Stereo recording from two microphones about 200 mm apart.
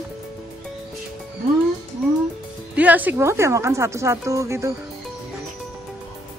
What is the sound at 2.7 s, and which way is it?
Speech, 10° right (ahead or behind).